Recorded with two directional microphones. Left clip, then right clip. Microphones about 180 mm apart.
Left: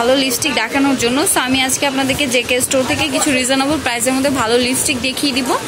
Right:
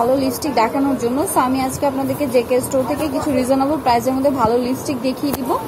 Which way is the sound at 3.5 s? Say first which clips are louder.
Right 1 dB; 20° left (ahead or behind).